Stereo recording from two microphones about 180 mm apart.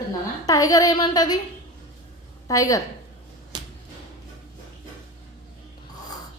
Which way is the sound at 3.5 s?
25° right (ahead or behind).